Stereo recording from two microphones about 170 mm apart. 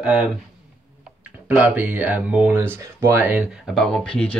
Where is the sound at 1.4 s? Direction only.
10° right (ahead or behind).